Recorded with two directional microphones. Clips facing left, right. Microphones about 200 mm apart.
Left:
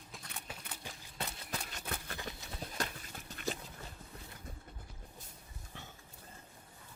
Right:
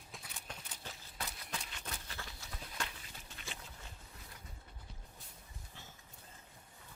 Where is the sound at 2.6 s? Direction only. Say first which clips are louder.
Left 3 dB; 40° left (ahead or behind).